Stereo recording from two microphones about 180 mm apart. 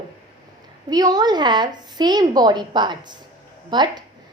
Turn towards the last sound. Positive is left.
turn(degrees=-25)  # may be behind; listen again after turning